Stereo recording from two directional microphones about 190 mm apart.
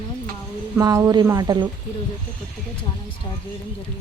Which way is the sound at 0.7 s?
20° right (ahead or behind).